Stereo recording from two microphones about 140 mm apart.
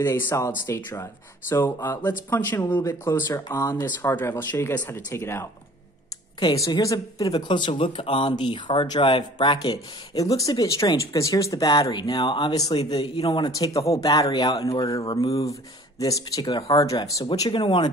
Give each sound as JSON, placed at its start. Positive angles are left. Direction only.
{"t": 0.0, "sound": "speech", "side_deg": 20}